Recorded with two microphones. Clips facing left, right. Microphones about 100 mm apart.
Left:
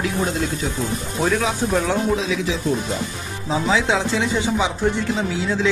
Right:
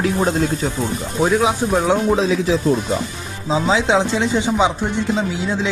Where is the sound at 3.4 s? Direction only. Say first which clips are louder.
Right 3 dB; 20° right (ahead or behind).